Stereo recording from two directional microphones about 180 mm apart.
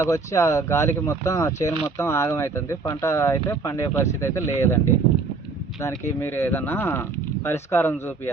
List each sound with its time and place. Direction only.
0.0 s speech: 15° left (ahead or behind)
6.1 s speech: 15° left (ahead or behind)